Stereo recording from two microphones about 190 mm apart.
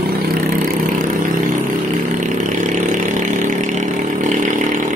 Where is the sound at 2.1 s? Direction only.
40° right (ahead or behind).